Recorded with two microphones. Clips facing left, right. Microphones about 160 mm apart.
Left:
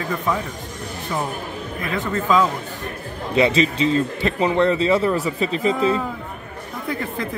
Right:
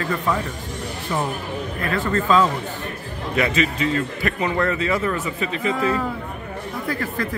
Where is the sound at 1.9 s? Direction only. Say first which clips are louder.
Right 1 dB; 10° left (ahead or behind).